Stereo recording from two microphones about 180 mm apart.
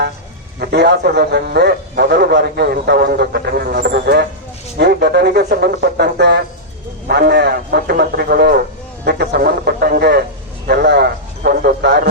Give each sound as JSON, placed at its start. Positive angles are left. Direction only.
{"t": 0.6, "sound": "a man's voice", "side_deg": -70}